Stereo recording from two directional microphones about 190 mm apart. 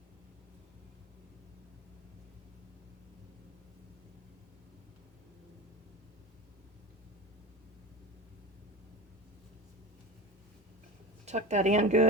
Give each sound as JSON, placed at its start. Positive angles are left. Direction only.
{"t": 11.3, "sound": "speech", "side_deg": -35}